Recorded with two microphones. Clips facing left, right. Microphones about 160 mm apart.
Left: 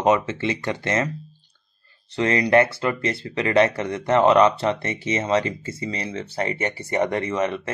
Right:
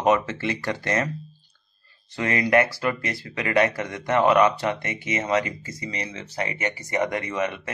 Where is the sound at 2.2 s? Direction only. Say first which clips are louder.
Left 3 dB; 25° left (ahead or behind).